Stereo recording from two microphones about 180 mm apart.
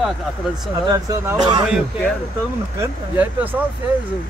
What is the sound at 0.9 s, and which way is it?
Speech, 15° right (ahead or behind).